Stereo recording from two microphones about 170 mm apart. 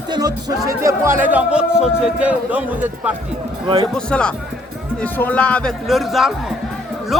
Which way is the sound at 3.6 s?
30° right (ahead or behind).